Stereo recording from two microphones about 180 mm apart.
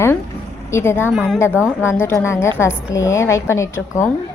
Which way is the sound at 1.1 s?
5° right (ahead or behind).